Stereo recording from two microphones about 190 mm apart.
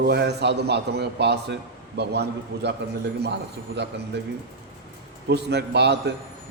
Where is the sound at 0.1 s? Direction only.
60° right (ahead or behind).